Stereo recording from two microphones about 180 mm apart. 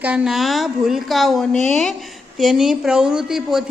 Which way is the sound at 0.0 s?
5° right (ahead or behind).